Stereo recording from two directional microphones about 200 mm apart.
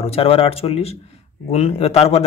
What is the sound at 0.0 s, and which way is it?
A man's voice, 30° left (ahead or behind).